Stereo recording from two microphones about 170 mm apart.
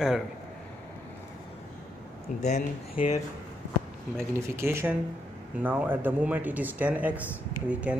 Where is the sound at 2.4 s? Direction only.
40° left (ahead or behind).